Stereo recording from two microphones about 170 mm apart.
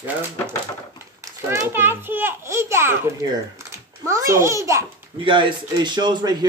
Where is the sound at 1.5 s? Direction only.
15° right (ahead or behind).